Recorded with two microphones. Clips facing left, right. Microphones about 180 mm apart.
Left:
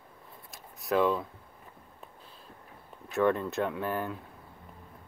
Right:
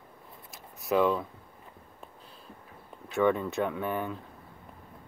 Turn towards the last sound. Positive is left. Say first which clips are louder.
# right 1 dB
turn(degrees=0)  # may be behind; listen again after turning